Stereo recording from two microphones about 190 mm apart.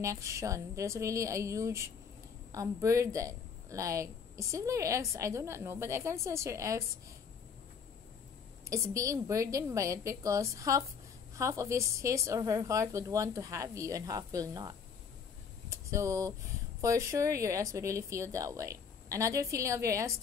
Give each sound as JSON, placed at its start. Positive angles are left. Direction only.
{"t": 0.0, "sound": "a woman's voice", "side_deg": -15}
{"t": 8.6, "sound": "a woman's voice", "side_deg": -15}
{"t": 15.7, "sound": "a woman's voice", "side_deg": -15}